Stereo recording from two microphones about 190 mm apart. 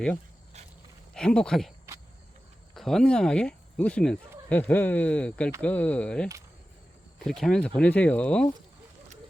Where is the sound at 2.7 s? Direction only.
Centre (ahead or behind).